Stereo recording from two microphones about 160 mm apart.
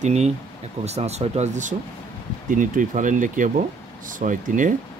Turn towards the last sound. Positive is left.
turn(degrees=-55)  # may be behind; listen again after turning